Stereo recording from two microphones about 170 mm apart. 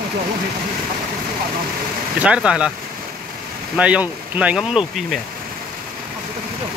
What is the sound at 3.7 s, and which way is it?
Speech, 5° right (ahead or behind).